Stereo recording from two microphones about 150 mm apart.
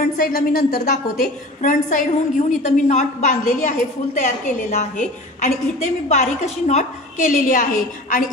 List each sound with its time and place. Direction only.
0.0 s a woman's voice: 65° left (ahead or behind)